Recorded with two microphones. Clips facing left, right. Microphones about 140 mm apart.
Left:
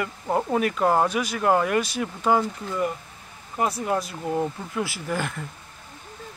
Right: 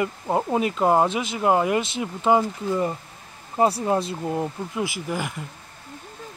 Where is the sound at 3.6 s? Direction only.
30° right (ahead or behind).